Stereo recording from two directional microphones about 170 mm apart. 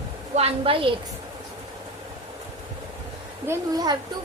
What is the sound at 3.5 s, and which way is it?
Speech, 25° right (ahead or behind).